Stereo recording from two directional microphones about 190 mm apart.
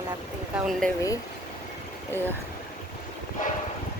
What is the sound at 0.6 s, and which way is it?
Speech, centre (ahead or behind).